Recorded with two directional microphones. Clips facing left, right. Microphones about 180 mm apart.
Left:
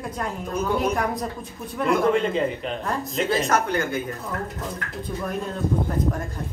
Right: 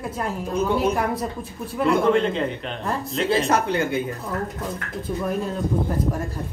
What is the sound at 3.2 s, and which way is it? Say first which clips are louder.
Speech: right 2 dB; 30° right (ahead or behind).